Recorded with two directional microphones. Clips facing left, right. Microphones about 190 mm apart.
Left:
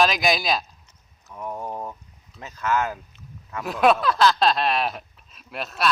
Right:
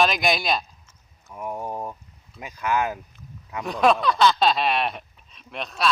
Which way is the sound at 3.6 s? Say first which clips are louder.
Left 1 dB; 5° left (ahead or behind).